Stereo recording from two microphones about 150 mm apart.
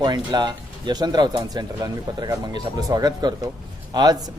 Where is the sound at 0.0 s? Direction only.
25° right (ahead or behind).